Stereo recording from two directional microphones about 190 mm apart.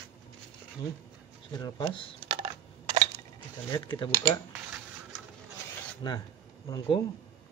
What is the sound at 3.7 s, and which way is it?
Speech, 25° left (ahead or behind).